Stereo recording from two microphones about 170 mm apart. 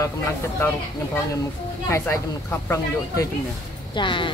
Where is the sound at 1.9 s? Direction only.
15° left (ahead or behind).